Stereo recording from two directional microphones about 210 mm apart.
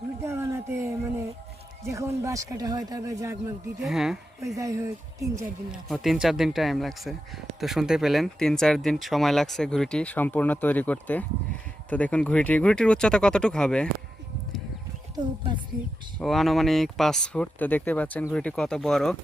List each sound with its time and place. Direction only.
0.2 s a sound: 10° right (ahead or behind)
1.9 s speech: 15° right (ahead or behind)
3.8 s speech: centre (ahead or behind)
4.5 s speech: 15° right (ahead or behind)
5.7 s speech: centre (ahead or behind)
16.2 s speech: centre (ahead or behind)